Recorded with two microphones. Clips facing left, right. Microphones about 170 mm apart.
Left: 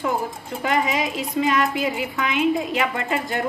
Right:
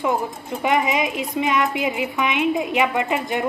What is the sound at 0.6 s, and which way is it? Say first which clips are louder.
A woman's voice: right 2 dB; 20° right (ahead or behind).